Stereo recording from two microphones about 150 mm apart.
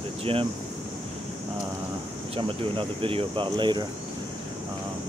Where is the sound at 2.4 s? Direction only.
35° right (ahead or behind).